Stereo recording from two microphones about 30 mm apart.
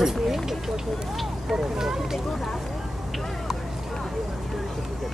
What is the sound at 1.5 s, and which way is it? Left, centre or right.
Speech, centre.